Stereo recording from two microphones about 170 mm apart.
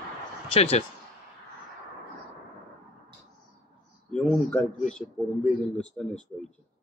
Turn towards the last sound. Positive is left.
turn(degrees=5)  # may be behind; listen again after turning